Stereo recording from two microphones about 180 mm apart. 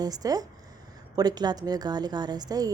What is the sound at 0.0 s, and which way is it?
Speech, 20° right (ahead or behind).